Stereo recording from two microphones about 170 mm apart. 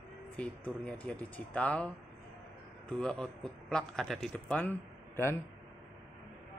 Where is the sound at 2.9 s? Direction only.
5° left (ahead or behind).